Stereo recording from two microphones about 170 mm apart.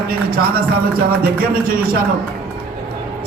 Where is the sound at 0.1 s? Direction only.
60° right (ahead or behind).